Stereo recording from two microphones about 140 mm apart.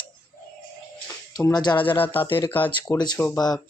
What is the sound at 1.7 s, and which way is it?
Speech, 10° left (ahead or behind).